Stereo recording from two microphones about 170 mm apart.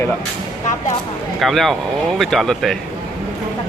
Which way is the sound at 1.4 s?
Centre (ahead or behind).